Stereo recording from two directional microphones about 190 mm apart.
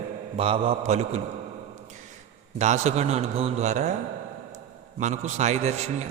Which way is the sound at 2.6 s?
35° right (ahead or behind).